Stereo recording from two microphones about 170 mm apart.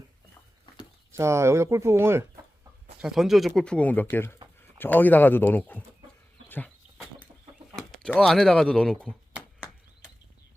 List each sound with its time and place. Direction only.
1.1 s speech: 15° right (ahead or behind)
3.0 s speech: centre (ahead or behind)
7.8 s speech: 5° left (ahead or behind)